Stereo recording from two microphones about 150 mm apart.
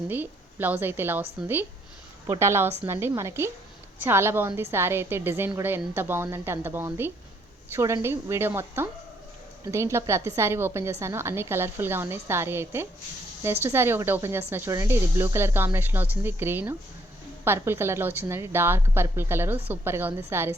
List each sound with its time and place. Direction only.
0.1 s a woman's voice: 10° right (ahead or behind)